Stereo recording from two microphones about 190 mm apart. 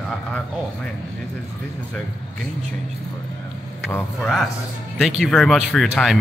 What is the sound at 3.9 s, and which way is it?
Speech, 10° left (ahead or behind).